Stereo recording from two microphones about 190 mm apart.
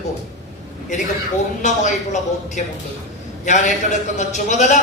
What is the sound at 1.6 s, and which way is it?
A man's voice, 40° left (ahead or behind).